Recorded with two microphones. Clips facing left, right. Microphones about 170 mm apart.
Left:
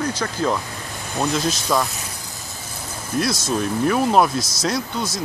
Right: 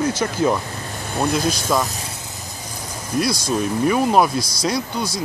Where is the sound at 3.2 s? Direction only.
5° right (ahead or behind).